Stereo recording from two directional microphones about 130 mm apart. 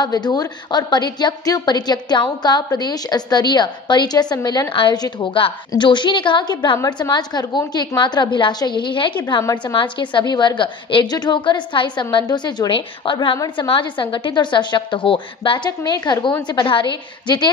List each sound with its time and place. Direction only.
0.0 s a woman's voice: 30° left (ahead or behind)
9.4 s a woman's voice: 25° left (ahead or behind)
9.8 s a woman's voice: 40° left (ahead or behind)